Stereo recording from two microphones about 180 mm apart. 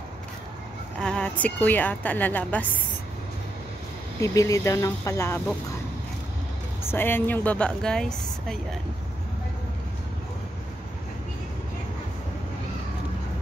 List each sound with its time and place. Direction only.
0.9 s a woman's voice: 5° left (ahead or behind)
4.2 s a woman's voice: 15° left (ahead or behind)
6.9 s a woman's voice: 10° left (ahead or behind)